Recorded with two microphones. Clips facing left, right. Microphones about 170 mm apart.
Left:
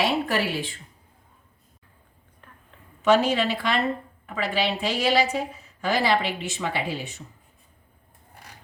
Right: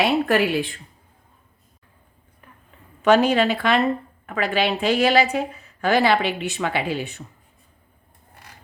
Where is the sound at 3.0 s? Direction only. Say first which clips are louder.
Right 4 dB; 60° right (ahead or behind).